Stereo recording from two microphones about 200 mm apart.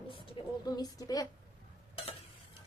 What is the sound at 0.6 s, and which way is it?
Speech, 20° left (ahead or behind).